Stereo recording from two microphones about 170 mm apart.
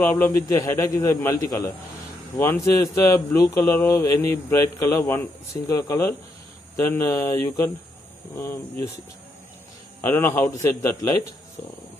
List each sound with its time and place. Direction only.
0.0 s speech: 10° left (ahead or behind)
10.0 s speech: 10° left (ahead or behind)